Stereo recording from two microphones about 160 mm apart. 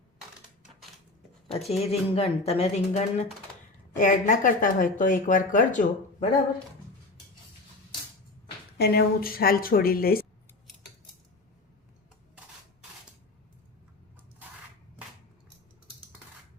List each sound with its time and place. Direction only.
1.5 s speech: 40° left (ahead or behind)
3.9 s speech: 55° left (ahead or behind)
8.8 s a woman's voice: 85° left; by 10.2 s 70° left (ahead or behind)